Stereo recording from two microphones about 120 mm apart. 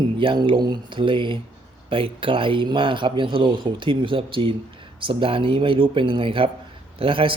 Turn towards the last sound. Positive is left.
turn(degrees=-45)  # may be behind; listen again after turning